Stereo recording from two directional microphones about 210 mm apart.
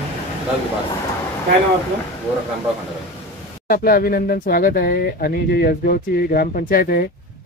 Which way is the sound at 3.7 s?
45° left (ahead or behind).